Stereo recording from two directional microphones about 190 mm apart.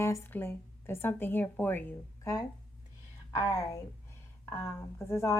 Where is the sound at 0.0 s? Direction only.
10° left (ahead or behind).